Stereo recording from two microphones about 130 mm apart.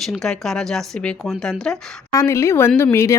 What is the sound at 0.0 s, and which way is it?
Speech, centre (ahead or behind).